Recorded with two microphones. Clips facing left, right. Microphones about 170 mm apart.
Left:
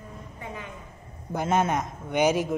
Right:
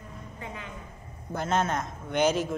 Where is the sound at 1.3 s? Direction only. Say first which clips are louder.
Left 3 dB; 10° left (ahead or behind).